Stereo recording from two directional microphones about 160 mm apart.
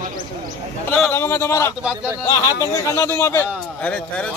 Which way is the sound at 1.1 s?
15° left (ahead or behind).